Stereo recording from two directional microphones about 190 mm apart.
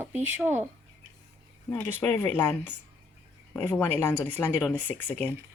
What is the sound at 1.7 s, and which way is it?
Speech, 10° left (ahead or behind).